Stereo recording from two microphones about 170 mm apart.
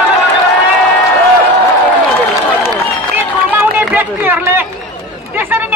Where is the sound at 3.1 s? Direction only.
10° right (ahead or behind).